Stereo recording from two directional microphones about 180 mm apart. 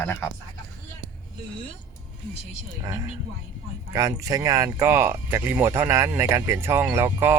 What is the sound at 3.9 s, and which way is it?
Speech, 20° right (ahead or behind).